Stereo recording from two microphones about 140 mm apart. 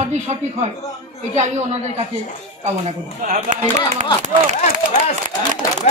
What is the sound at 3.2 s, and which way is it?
Speech, 65° right (ahead or behind).